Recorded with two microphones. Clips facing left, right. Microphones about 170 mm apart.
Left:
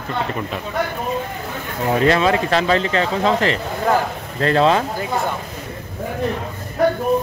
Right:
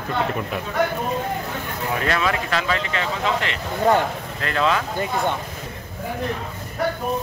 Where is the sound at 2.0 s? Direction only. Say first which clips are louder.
Left 7 dB; 30° left (ahead or behind).